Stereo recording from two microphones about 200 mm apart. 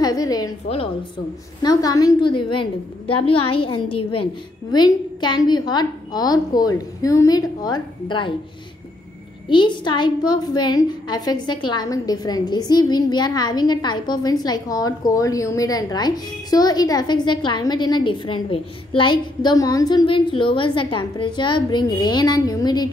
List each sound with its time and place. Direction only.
0.0 s a woman's voice: 20° left (ahead or behind)
1.6 s a woman's voice: 20° left (ahead or behind)
9.5 s a woman's voice: 25° left (ahead or behind)